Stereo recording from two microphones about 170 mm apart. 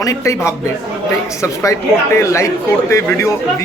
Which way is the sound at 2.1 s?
15° left (ahead or behind).